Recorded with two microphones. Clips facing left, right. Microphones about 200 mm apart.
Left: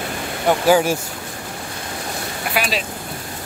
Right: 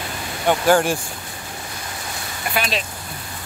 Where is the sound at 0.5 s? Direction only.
5° left (ahead or behind).